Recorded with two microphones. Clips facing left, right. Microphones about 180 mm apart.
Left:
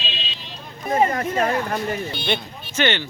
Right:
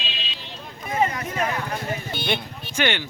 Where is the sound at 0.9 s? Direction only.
50° left (ahead or behind).